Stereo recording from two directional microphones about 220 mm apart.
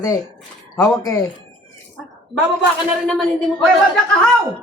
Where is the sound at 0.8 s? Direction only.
15° left (ahead or behind).